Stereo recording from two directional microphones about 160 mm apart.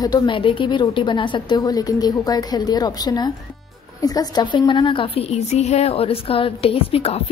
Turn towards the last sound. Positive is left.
turn(degrees=40)  # may be behind; listen again after turning